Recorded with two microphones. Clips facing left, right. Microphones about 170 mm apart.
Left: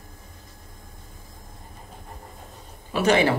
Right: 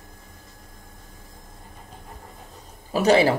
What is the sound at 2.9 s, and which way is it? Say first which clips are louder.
Speech: right 2 dB; 35° right (ahead or behind).